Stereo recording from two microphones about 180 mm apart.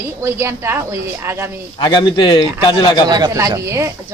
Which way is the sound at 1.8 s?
25° left (ahead or behind).